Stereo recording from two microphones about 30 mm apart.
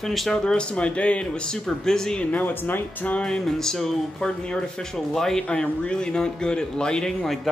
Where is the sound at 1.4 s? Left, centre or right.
Centre.